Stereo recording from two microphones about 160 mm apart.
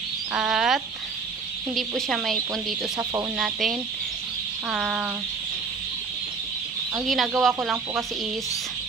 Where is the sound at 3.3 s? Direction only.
Centre (ahead or behind).